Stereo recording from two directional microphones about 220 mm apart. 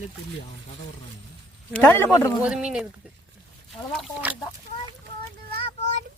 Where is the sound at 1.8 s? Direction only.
10° left (ahead or behind).